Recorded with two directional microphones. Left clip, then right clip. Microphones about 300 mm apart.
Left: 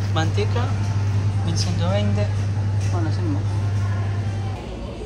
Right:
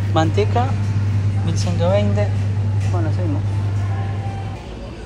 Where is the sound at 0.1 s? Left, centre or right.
Centre.